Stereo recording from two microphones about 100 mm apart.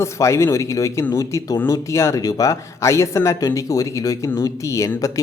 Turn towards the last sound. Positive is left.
turn(degrees=30)  # may be behind; listen again after turning